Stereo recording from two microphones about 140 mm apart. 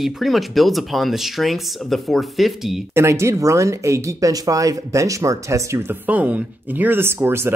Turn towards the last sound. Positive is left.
turn(degrees=-15)  # may be behind; listen again after turning